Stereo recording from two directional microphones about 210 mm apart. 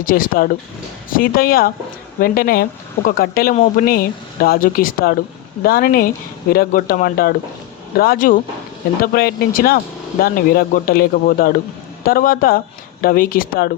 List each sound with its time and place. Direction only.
0.0 s speech: 40° left (ahead or behind)
3.5 s speech: 30° left (ahead or behind)
3.8 s speech: 45° left (ahead or behind)